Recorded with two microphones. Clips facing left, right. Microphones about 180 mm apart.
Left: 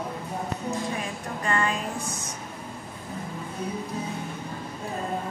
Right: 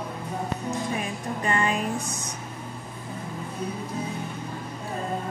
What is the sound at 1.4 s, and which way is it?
Music, 20° right (ahead or behind).